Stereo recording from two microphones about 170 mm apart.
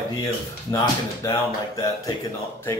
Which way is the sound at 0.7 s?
20° left (ahead or behind).